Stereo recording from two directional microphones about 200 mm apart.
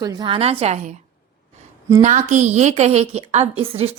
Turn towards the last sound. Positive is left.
turn(degrees=-30)  # may be behind; listen again after turning